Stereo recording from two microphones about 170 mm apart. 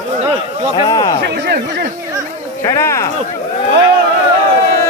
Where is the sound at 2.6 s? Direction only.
15° left (ahead or behind).